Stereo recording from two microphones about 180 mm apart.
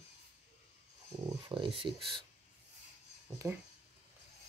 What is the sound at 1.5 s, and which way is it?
Speech, 30° right (ahead or behind).